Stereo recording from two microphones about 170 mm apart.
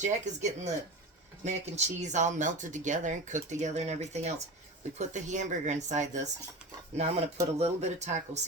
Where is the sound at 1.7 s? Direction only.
45° right (ahead or behind).